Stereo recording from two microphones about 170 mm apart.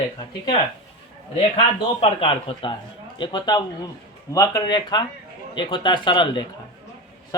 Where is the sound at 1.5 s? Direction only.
30° left (ahead or behind).